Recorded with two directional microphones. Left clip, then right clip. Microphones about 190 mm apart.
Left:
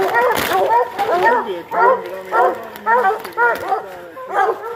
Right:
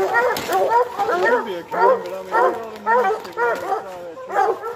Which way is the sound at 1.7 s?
15° right (ahead or behind).